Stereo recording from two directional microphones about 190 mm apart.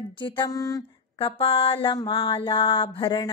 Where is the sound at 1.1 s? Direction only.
30° left (ahead or behind).